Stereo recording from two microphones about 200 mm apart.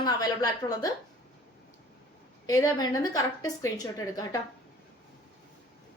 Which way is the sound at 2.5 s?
15° left (ahead or behind).